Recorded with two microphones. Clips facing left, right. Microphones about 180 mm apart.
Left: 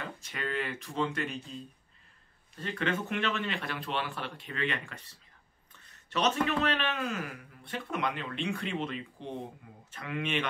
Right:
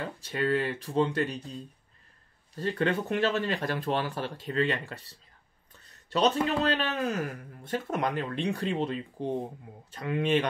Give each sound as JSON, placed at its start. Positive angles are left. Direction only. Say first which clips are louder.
{"t": 0.0, "sound": "speech", "louder": "right 8 dB", "side_deg": -35}
{"t": 6.1, "sound": "speech", "louder": "right 3 dB", "side_deg": -30}